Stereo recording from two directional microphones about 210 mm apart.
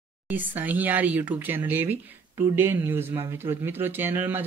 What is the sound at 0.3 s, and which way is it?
Speech, 10° right (ahead or behind).